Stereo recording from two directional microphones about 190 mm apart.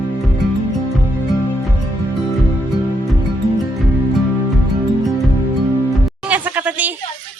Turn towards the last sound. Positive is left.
turn(degrees=-10)  # may be behind; listen again after turning